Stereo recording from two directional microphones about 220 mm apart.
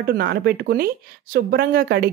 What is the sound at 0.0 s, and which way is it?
A woman's voice, 45° right (ahead or behind).